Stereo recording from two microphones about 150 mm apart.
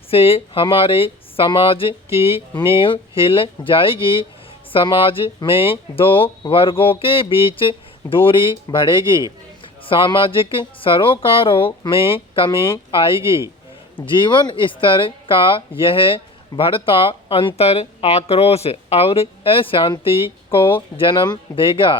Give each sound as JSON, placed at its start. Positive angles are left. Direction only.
{"t": 0.1, "sound": "speech", "side_deg": 40}
{"t": 14.2, "sound": "speech", "side_deg": 30}